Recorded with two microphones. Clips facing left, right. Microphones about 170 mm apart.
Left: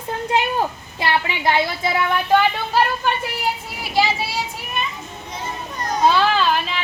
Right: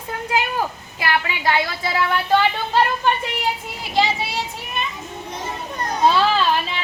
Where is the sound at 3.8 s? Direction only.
10° left (ahead or behind).